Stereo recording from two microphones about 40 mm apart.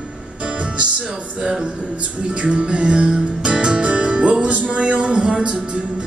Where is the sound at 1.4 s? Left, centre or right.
Centre.